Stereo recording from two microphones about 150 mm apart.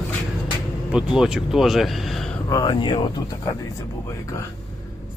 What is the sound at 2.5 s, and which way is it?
Speech, 30° left (ahead or behind).